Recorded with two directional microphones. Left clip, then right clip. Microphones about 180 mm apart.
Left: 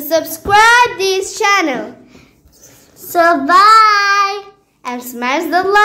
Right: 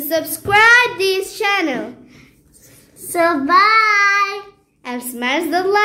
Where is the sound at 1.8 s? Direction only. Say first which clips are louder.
Left 2 dB; 20° right (ahead or behind).